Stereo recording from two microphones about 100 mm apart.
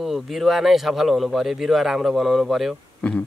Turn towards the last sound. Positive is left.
turn(degrees=10)  # may be behind; listen again after turning